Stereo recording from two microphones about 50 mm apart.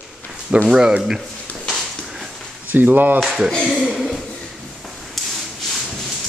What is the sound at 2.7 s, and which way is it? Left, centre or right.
Speech, right.